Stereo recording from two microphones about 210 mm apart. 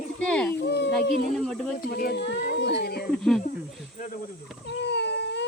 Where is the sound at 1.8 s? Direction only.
45° left (ahead or behind).